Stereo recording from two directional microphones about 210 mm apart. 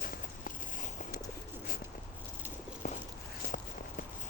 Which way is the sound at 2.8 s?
40° left (ahead or behind).